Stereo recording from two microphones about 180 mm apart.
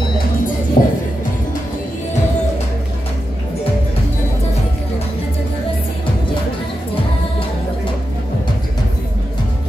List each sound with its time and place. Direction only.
0.8 s music: 40° left (ahead or behind)